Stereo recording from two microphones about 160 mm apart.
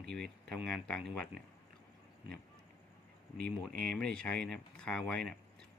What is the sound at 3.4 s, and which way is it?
Speech, 5° left (ahead or behind).